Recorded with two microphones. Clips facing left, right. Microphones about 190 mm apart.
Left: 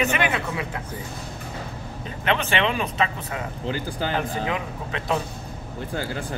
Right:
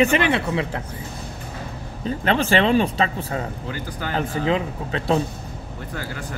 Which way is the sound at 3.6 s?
30° left (ahead or behind).